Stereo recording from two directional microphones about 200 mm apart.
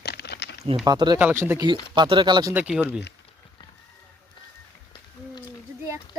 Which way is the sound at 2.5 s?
5° right (ahead or behind).